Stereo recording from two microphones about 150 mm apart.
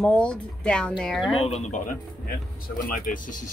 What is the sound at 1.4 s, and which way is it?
Speech, 45° left (ahead or behind).